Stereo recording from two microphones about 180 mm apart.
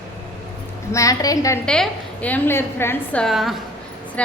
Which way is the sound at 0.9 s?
20° left (ahead or behind).